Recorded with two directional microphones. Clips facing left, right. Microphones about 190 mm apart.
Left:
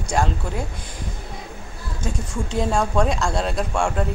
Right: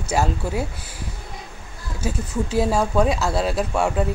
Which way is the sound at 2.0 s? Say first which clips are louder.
Right 3 dB; 5° right (ahead or behind).